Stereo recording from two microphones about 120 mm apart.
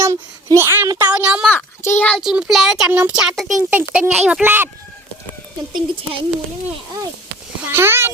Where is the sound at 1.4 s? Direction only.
20° left (ahead or behind).